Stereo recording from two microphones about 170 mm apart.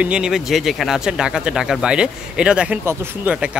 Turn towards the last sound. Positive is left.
turn(degrees=-5)  # may be behind; listen again after turning